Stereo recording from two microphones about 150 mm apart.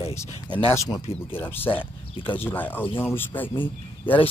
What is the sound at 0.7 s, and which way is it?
Speech, 25° left (ahead or behind).